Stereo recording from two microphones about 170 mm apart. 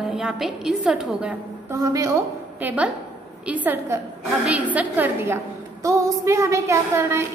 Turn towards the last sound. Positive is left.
turn(degrees=-15)  # may be behind; listen again after turning